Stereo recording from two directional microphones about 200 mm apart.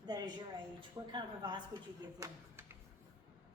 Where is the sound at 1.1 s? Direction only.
20° right (ahead or behind).